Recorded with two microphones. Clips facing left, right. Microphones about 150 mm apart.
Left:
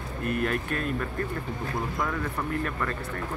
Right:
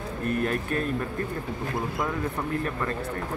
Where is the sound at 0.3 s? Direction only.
35° right (ahead or behind).